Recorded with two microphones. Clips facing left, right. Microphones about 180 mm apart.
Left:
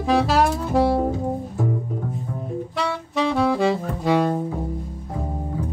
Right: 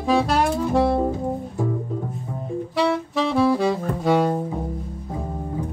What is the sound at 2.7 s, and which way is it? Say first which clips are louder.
Saxophone: right 6 dB; centre (ahead or behind).